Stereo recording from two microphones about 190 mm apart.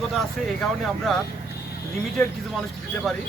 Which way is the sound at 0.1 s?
Centre (ahead or behind).